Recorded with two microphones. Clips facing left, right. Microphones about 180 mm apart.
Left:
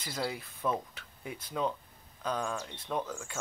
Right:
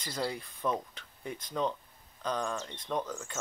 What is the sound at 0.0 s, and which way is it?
Speech, 5° left (ahead or behind).